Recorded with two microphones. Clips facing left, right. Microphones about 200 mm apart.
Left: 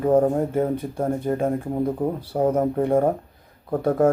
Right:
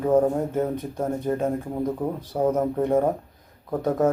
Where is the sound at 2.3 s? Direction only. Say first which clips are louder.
Left 1 dB; 10° left (ahead or behind).